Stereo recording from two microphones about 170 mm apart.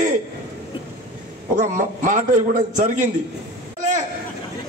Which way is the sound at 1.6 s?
50° right (ahead or behind).